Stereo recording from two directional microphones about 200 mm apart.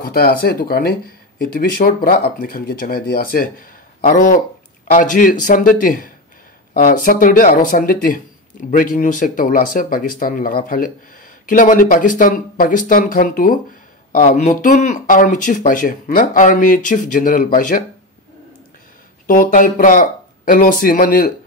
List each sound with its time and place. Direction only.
0.0 s speech: 50° left (ahead or behind)
19.2 s speech: 40° left (ahead or behind)